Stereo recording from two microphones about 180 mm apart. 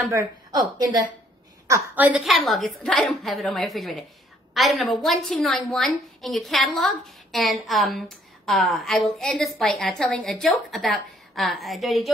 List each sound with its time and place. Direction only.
0.5 s a woman's voice: 20° right (ahead or behind)
1.7 s a woman's voice: 10° right (ahead or behind)